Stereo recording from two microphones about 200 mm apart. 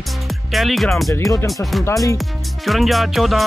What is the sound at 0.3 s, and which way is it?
Speech, centre (ahead or behind).